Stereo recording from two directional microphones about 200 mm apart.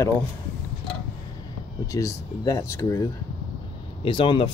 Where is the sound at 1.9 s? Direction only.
15° left (ahead or behind).